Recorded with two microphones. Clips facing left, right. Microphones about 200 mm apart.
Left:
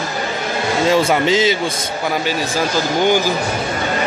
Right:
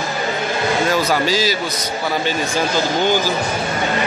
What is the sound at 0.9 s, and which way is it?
Speech, 25° left (ahead or behind).